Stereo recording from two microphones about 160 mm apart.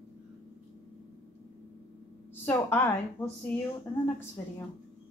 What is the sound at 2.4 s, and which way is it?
A woman's voice, 10° left (ahead or behind).